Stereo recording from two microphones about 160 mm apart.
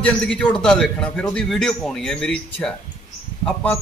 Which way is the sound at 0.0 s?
5° left (ahead or behind).